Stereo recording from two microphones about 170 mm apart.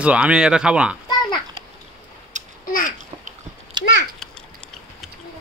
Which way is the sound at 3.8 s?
25° right (ahead or behind).